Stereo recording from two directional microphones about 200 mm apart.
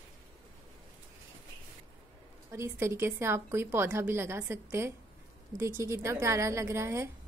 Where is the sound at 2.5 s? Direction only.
15° right (ahead or behind).